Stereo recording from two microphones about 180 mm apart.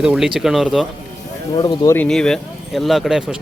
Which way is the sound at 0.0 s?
5° right (ahead or behind).